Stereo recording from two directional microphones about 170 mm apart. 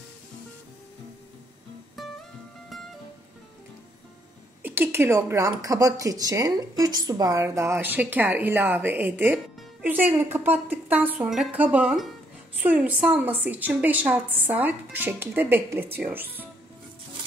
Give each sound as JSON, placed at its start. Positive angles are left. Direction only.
{"t": 2.0, "sound": "music", "side_deg": 0}
{"t": 4.6, "sound": "speech", "side_deg": -15}